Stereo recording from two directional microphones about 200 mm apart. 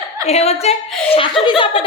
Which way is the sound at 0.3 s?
30° left (ahead or behind).